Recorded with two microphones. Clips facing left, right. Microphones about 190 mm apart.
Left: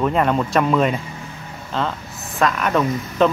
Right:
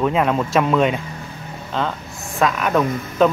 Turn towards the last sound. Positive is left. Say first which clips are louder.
# right 1 dB
turn(degrees=-5)  # may be behind; listen again after turning